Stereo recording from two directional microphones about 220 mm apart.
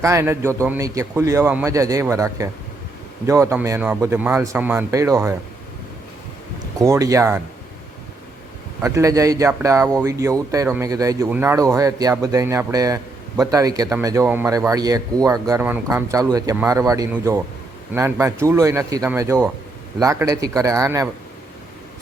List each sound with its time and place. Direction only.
0.0 s speech: 15° right (ahead or behind)
6.7 s speech: 15° right (ahead or behind)
8.8 s speech: 15° right (ahead or behind)